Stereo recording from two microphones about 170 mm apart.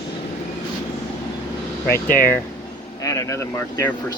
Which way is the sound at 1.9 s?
10° left (ahead or behind).